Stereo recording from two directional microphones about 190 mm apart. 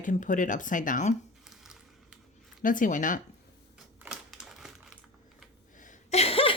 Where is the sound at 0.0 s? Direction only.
40° left (ahead or behind).